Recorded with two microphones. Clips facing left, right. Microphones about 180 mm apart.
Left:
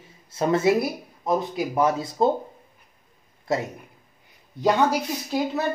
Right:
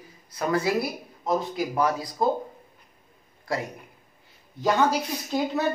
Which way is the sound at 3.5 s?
25° left (ahead or behind).